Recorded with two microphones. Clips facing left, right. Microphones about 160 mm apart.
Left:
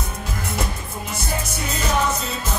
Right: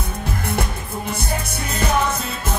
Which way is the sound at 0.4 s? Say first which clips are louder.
Right 1 dB; 60° right (ahead or behind).